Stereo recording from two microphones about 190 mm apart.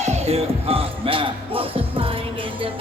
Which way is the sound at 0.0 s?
35° right (ahead or behind).